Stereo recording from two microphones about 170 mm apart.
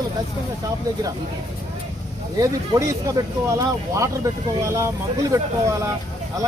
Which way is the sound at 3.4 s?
20° right (ahead or behind).